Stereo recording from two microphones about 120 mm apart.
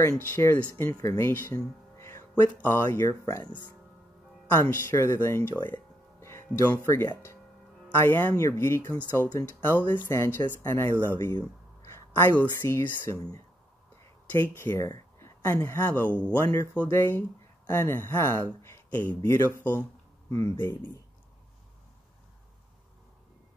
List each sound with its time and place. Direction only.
0.3 s speech: 20° left (ahead or behind)
1.6 s music: 25° left (ahead or behind)
2.6 s speech: 15° left (ahead or behind)
4.6 s speech: 20° left (ahead or behind)
14.3 s speech: 20° left (ahead or behind)